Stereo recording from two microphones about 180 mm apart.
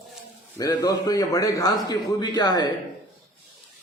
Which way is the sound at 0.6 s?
20° left (ahead or behind).